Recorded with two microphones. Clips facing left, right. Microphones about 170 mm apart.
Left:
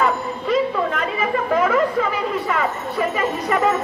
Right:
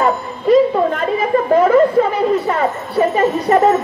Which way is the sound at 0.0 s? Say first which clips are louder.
Right 4 dB; 35° right (ahead or behind).